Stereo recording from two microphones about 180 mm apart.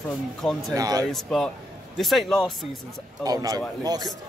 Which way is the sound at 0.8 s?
20° right (ahead or behind).